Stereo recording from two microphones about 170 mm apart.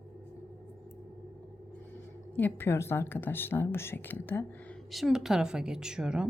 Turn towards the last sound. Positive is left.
turn(degrees=-5)  # may be behind; listen again after turning